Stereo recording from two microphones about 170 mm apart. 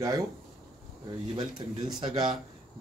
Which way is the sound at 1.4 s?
25° right (ahead or behind).